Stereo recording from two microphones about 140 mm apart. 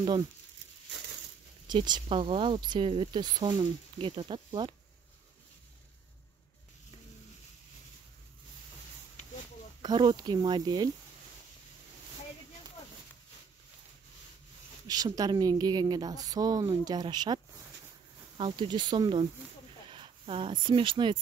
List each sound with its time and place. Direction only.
1.7 s speech: 30° right (ahead or behind)
9.8 s speech: 35° right (ahead or behind)
14.9 s a woman's voice: 25° right (ahead or behind)
18.4 s speech: 35° right (ahead or behind)